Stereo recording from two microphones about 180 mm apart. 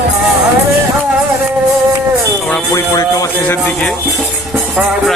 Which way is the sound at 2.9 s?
20° left (ahead or behind).